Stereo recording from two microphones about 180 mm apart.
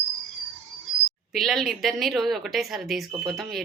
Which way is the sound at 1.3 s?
Centre (ahead or behind).